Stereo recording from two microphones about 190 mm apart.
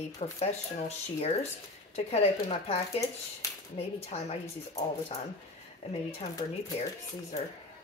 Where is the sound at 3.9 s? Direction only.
30° left (ahead or behind).